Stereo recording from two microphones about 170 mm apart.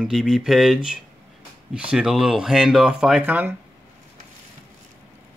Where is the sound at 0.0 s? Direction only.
5° right (ahead or behind).